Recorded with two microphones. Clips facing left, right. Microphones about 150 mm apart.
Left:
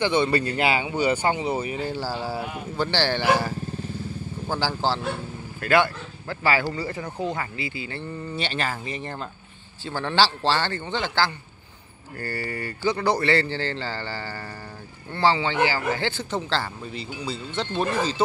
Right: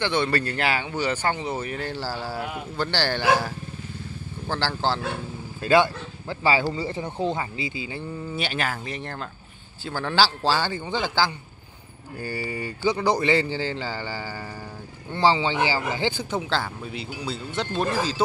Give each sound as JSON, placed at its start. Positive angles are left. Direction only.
{"t": 0.0, "sound": "speech", "side_deg": 5}
{"t": 0.5, "sound": "speech", "side_deg": 15}
{"t": 2.0, "sound": "speech", "side_deg": 20}
{"t": 2.3, "sound": "speech", "side_deg": 0}
{"t": 5.6, "sound": "speech", "side_deg": -20}
{"t": 8.3, "sound": "speech", "side_deg": -5}